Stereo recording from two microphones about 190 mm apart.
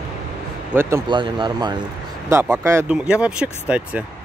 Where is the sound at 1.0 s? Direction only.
25° right (ahead or behind).